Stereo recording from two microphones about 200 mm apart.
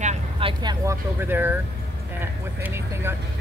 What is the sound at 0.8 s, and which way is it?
Speech, 10° right (ahead or behind).